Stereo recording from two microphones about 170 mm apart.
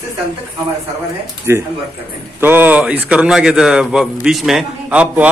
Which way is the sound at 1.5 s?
15° right (ahead or behind).